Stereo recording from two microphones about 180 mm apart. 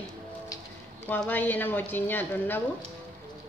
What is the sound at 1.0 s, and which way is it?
Dishes, 10° left (ahead or behind).